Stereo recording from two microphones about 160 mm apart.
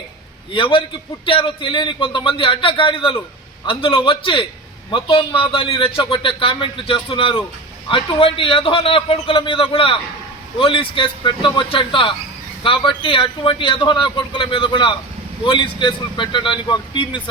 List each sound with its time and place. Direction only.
0.5 s a man's voice: 30° left (ahead or behind)